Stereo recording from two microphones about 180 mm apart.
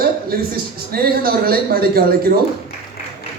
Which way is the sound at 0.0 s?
55° right (ahead or behind).